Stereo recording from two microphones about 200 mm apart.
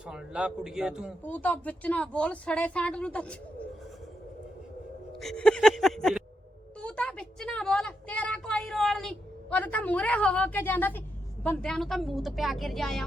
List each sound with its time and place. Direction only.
0.0 s a woman's voice: 5° right (ahead or behind)
1.2 s speech: 10° left (ahead or behind)
5.2 s a woman's voice: 5° left (ahead or behind)